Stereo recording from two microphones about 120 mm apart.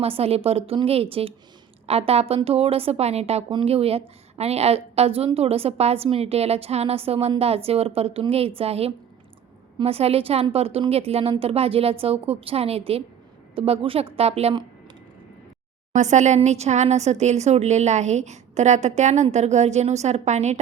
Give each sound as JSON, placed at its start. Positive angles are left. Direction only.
{"t": 0.0, "sound": "a woman's voice", "side_deg": -55}
{"t": 16.0, "sound": "speech", "side_deg": -80}